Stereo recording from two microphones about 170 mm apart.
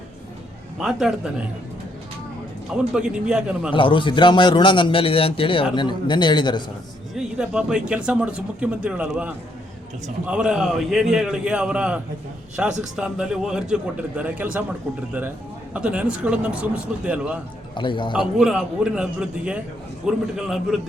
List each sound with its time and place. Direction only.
0.8 s a man's voice: centre (ahead or behind)
2.7 s a man's voice: 5° right (ahead or behind)
3.7 s a man's voice: 30° left (ahead or behind)
7.1 s a man's voice: 5° right (ahead or behind)
15.7 s speech: 5° right (ahead or behind)
17.7 s a man's voice: 30° left (ahead or behind)
18.2 s a man's voice: 5° right (ahead or behind)